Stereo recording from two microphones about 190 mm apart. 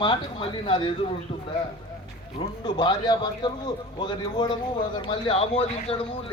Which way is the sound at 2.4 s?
35° left (ahead or behind).